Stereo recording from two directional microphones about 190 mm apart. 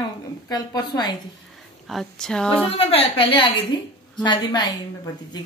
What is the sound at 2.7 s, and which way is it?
A woman's voice, 30° left (ahead or behind).